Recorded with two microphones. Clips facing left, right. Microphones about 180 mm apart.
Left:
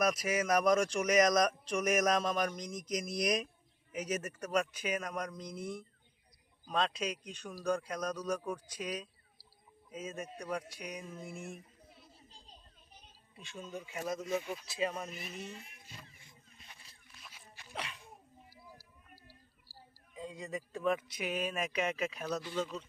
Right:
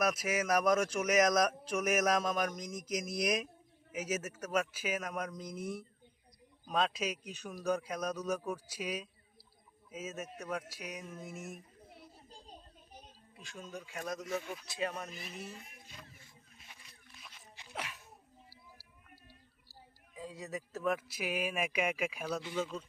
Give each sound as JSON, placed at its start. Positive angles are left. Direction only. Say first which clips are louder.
{"t": 0.0, "sound": "speech", "louder": "left 1 dB", "side_deg": -5}
{"t": 11.9, "sound": "children playing", "louder": "right 5 dB", "side_deg": -50}
{"t": 13.3, "sound": "speech", "louder": "left 2 dB", "side_deg": 0}
{"t": 14.5, "sound": "speech", "louder": "left 2 dB", "side_deg": 0}
{"t": 17.2, "sound": "a sound", "louder": "even", "side_deg": 0}
{"t": 18.8, "sound": "a sound", "louder": "left 1 dB", "side_deg": -25}
{"t": 20.1, "sound": "speech", "louder": "left 1 dB", "side_deg": -5}